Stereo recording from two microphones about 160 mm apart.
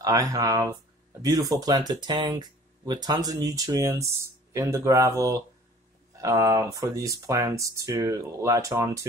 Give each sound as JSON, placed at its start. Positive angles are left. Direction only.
{"t": 0.0, "sound": "speech", "side_deg": -25}